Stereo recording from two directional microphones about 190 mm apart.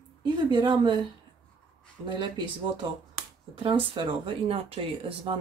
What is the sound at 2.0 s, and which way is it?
Speech, 25° right (ahead or behind).